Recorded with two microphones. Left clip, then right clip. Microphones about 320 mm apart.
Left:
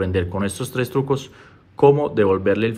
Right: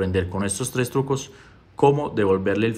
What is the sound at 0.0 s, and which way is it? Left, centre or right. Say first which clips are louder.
Speech: left 2 dB; centre.